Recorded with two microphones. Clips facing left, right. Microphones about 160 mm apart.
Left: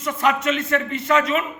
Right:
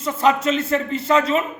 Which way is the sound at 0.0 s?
30° right (ahead or behind).